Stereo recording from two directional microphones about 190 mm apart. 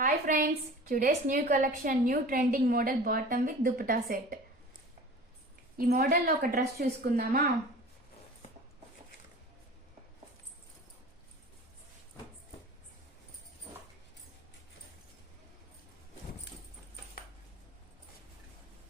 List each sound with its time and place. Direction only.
0.0 s a woman's voice: 45° right (ahead or behind)
5.7 s a woman's voice: 45° right (ahead or behind)